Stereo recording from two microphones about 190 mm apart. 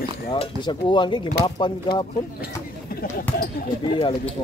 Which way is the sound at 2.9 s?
50° left (ahead or behind).